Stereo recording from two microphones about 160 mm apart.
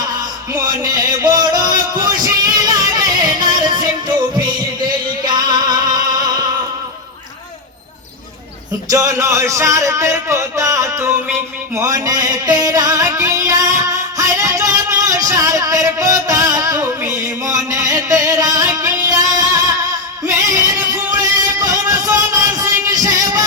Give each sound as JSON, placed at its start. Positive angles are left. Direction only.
{"t": 0.8, "sound": "music", "side_deg": -25}
{"t": 8.9, "sound": "a man's voice", "side_deg": -20}
{"t": 11.7, "sound": "music", "side_deg": -20}